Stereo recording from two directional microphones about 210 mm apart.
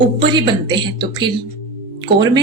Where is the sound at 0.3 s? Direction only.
20° right (ahead or behind).